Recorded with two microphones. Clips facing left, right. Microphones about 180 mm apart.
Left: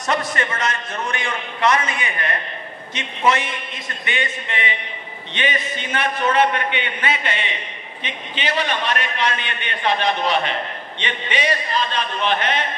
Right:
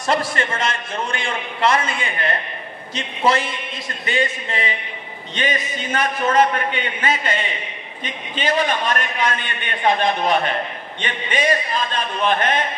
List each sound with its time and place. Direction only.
0.0 s a man's voice: 30° right (ahead or behind); by 12.6 s 50° right (ahead or behind)